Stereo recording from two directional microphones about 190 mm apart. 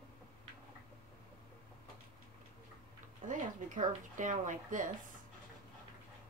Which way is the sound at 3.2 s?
40° right (ahead or behind).